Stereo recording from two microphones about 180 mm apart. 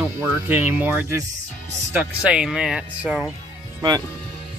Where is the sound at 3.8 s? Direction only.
20° right (ahead or behind).